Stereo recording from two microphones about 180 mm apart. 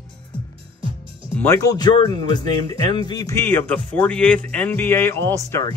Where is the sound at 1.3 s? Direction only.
10° left (ahead or behind).